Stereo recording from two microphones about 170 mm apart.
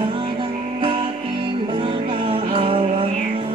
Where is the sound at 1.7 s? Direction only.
30° right (ahead or behind).